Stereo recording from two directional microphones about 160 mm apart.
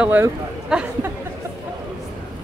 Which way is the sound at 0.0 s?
10° right (ahead or behind).